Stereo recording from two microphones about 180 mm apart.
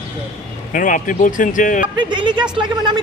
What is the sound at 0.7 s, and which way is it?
Speech, 45° left (ahead or behind).